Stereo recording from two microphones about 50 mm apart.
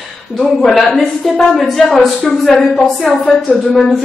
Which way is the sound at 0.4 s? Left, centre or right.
Centre.